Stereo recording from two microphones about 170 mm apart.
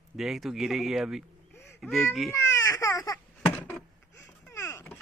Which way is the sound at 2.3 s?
15° left (ahead or behind).